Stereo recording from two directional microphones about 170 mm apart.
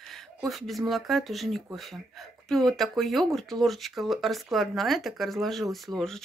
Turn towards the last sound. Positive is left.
turn(degrees=5)  # may be behind; listen again after turning